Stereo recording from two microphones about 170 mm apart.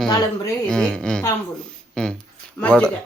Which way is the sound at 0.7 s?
5° left (ahead or behind).